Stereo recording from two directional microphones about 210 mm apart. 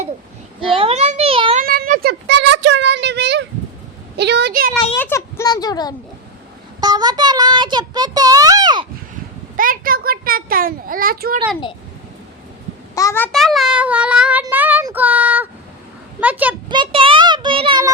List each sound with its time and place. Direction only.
0.6 s a sound: 25° right (ahead or behind)
1.6 s a sound: 45° right (ahead or behind)
4.2 s a child's voice: 55° right (ahead or behind)
4.7 s a child's voice: 10° left (ahead or behind)
6.7 s a child's voice: 20° right (ahead or behind)
9.6 s a child's voice: 40° right (ahead or behind)
12.9 s speech: 15° left (ahead or behind); by 14.4 s 5° right (ahead or behind)
14.4 s child singing: 10° right (ahead or behind)
16.2 s speech: 5° right (ahead or behind)
16.6 s a child's voice: 20° right (ahead or behind)